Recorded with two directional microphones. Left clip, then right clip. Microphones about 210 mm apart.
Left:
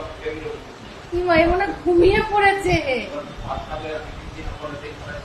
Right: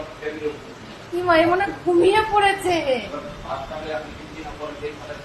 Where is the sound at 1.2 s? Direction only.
10° left (ahead or behind).